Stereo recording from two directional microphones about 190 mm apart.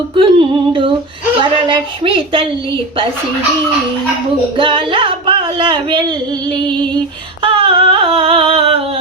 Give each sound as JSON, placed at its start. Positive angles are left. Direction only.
{"t": 0.2, "sound": "speech", "side_deg": -25}
{"t": 4.5, "sound": "speech", "side_deg": -25}
{"t": 7.4, "sound": "a sound", "side_deg": -30}